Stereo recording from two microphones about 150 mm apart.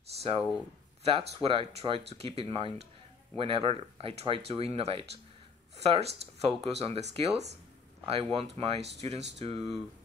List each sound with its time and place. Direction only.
1.0 s speech: 40° right (ahead or behind)